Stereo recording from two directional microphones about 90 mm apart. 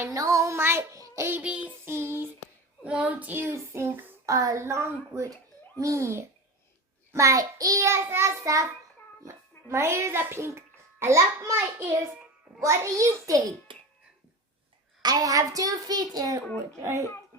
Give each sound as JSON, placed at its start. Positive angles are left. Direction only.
{"t": 0.0, "sound": "child singing", "side_deg": -40}
{"t": 1.5, "sound": "child singing", "side_deg": -15}
{"t": 1.8, "sound": "child singing", "side_deg": -25}
{"t": 2.8, "sound": "child singing", "side_deg": -15}
{"t": 3.5, "sound": "child singing", "side_deg": -30}
{"t": 4.3, "sound": "a woman's voice", "side_deg": -35}
{"t": 7.9, "sound": "a woman's voice", "side_deg": -30}
{"t": 11.5, "sound": "child singing", "side_deg": -25}
{"t": 12.5, "sound": "a woman's voice", "side_deg": -35}
{"t": 13.7, "sound": "a sound", "side_deg": -70}
{"t": 15.0, "sound": "a child's voice", "side_deg": -45}
{"t": 16.8, "sound": "a woman's voice", "side_deg": -30}